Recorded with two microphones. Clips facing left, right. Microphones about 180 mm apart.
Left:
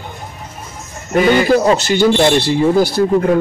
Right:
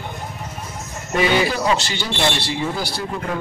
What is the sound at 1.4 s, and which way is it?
Speech, 45° left (ahead or behind).